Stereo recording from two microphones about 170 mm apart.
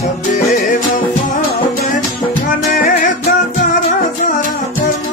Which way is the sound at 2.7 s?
50° left (ahead or behind).